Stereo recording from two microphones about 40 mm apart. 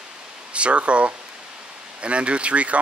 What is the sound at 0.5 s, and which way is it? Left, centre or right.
Speech, right.